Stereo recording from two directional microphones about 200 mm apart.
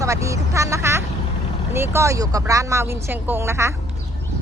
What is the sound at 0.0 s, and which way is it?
Speech, 15° right (ahead or behind).